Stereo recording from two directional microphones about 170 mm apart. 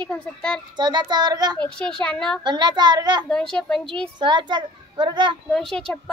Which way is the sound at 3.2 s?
5° left (ahead or behind).